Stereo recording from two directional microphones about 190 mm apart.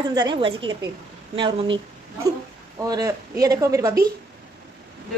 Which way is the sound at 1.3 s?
25° right (ahead or behind).